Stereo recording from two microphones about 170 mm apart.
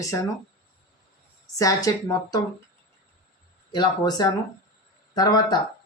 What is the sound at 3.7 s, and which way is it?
Speech, 25° left (ahead or behind).